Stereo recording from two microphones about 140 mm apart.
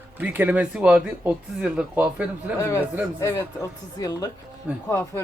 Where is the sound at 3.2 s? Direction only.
20° left (ahead or behind).